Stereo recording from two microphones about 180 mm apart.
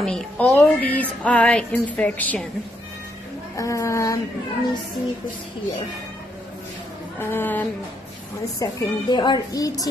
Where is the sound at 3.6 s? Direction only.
15° left (ahead or behind).